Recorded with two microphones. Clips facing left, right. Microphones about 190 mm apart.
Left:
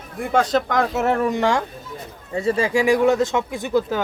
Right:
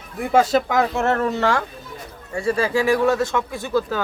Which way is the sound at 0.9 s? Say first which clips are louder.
Left 1 dB; 10° left (ahead or behind).